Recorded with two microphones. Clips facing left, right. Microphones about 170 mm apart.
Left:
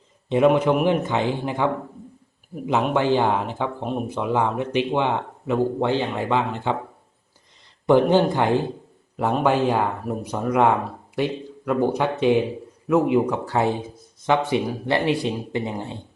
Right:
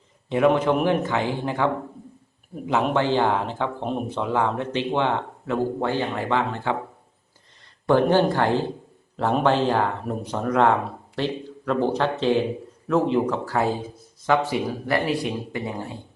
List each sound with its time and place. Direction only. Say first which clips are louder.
0.3 s speech: left 2 dB; 20° left (ahead or behind)
2.9 s speech: left 2 dB; 15° left (ahead or behind)
3.8 s speech: left 1 dB; centre (ahead or behind)
4.2 s speech: left 1 dB; 15° left (ahead or behind)
7.9 s speech: left 2 dB; 15° left (ahead or behind)